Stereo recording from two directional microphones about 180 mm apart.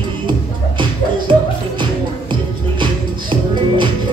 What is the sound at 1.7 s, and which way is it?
Music, 25° right (ahead or behind).